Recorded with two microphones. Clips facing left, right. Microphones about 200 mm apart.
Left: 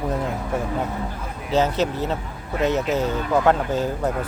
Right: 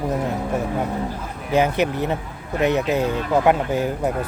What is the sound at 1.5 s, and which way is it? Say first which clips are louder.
Speech: right 2 dB; 15° right (ahead or behind).